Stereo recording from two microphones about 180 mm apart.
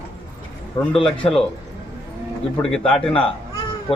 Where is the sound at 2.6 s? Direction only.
5° left (ahead or behind).